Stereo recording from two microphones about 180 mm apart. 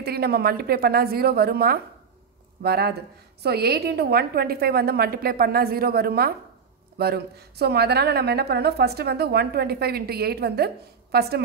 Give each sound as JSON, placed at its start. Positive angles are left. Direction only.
{"t": 0.0, "sound": "a woman's voice", "side_deg": -60}